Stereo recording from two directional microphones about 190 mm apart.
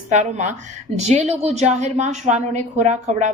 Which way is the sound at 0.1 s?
40° right (ahead or behind).